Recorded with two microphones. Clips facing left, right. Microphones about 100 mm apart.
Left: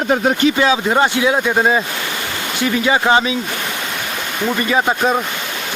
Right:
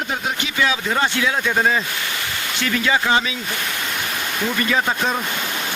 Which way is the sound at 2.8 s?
25° left (ahead or behind).